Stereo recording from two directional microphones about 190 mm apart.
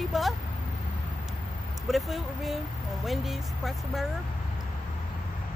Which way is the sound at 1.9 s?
Centre (ahead or behind).